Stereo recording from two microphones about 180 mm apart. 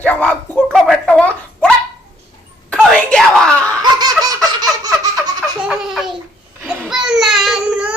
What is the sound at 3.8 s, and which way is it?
Laughter, 20° right (ahead or behind).